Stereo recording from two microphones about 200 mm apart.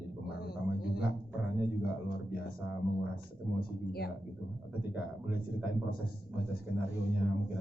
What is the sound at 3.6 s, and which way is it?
Speech, 50° left (ahead or behind).